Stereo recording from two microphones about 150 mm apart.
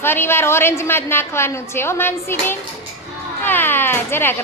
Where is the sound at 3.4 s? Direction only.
15° left (ahead or behind).